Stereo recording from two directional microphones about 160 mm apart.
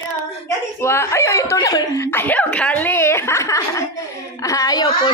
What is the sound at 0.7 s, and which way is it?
A woman's voice, 15° left (ahead or behind).